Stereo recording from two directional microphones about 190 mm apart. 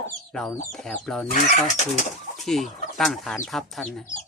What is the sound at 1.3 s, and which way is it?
Speech, 40° left (ahead or behind).